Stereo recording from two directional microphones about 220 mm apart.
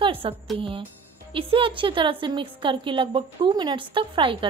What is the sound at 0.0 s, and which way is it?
A woman's voice, 25° right (ahead or behind).